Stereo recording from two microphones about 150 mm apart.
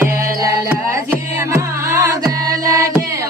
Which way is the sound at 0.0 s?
20° right (ahead or behind).